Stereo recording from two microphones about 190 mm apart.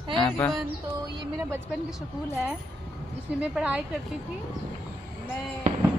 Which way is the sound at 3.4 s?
5° right (ahead or behind).